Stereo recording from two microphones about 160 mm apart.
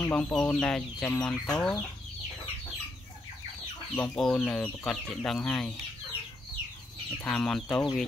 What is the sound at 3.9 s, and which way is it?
Speech, 5° left (ahead or behind).